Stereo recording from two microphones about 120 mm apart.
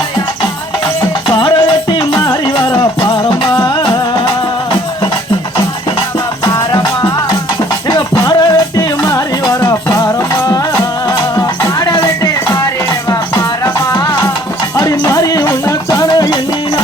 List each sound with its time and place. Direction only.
1.3 s music: 40° left (ahead or behind)
6.4 s music: 30° left (ahead or behind)
13.7 s music: 35° left (ahead or behind)